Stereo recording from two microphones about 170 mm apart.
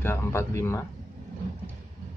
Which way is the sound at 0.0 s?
15° left (ahead or behind).